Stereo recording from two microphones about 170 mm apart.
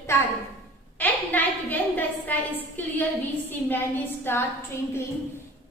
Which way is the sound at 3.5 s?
10° left (ahead or behind).